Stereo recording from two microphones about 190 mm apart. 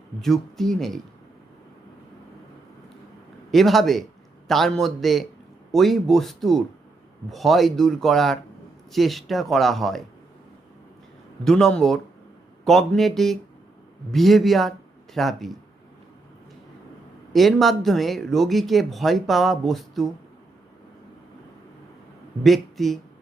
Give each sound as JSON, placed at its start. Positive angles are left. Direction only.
{"t": 0.2, "sound": "speech", "side_deg": 0}
{"t": 3.5, "sound": "speech", "side_deg": 0}
{"t": 11.4, "sound": "speech", "side_deg": 5}
{"t": 17.3, "sound": "speech", "side_deg": 0}
{"t": 22.4, "sound": "speech", "side_deg": 0}